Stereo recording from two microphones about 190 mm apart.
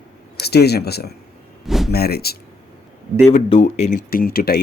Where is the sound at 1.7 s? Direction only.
Centre (ahead or behind).